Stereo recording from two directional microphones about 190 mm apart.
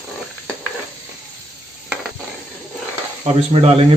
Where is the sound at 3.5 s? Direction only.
30° right (ahead or behind).